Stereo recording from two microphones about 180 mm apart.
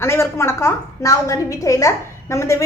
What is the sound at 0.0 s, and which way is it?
A woman's voice, 15° left (ahead or behind).